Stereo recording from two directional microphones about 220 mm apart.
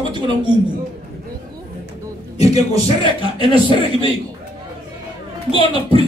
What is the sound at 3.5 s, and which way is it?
Speech, 25° right (ahead or behind).